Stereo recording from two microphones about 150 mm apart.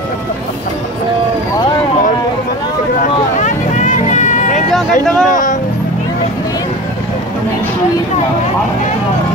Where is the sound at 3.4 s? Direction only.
55° left (ahead or behind).